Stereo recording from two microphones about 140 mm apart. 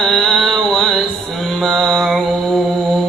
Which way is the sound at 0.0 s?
Centre (ahead or behind).